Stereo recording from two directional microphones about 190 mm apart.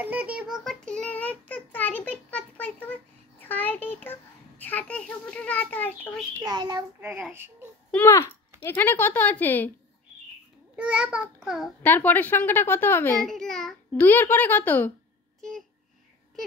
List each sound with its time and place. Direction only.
0.0 s child singing: 10° right (ahead or behind); by 3.9 s 10° left (ahead or behind)
4.0 s a child's voice: 10° left (ahead or behind)
6.4 s a child's voice: 20° right (ahead or behind)
7.9 s a child's voice: 15° left (ahead or behind)
10.8 s a child's voice: 5° right (ahead or behind)
11.8 s a child's voice: 10° left (ahead or behind)